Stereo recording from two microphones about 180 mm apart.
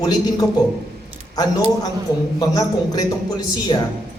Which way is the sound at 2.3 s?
20° left (ahead or behind).